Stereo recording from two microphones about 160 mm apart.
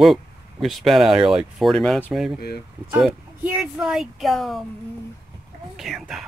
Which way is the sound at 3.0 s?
5° right (ahead or behind).